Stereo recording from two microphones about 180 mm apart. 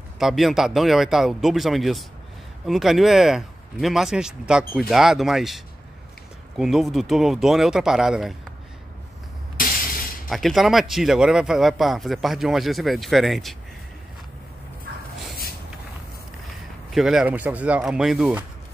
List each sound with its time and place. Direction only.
0.2 s speech: centre (ahead or behind)
9.6 s a sound: 50° left (ahead or behind)
10.3 s speech: centre (ahead or behind)
16.4 s speech: centre (ahead or behind)